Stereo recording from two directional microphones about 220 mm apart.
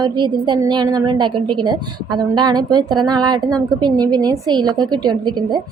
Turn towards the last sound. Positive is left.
turn(degrees=-20)  # may be behind; listen again after turning